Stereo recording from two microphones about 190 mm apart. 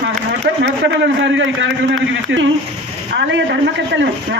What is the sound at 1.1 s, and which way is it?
A man's voice, 70° right (ahead or behind).